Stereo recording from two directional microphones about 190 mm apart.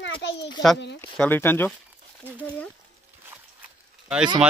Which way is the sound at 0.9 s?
10° left (ahead or behind).